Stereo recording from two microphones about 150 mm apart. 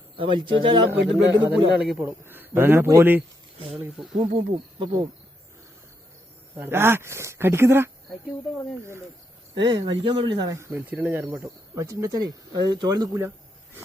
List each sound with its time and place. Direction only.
0.2 s speech: 35° right (ahead or behind)
1.0 s a man's voice: centre (ahead or behind)
4.2 s speech: 35° right (ahead or behind)
6.6 s speech: 15° right (ahead or behind)
9.6 s speech: 30° right (ahead or behind)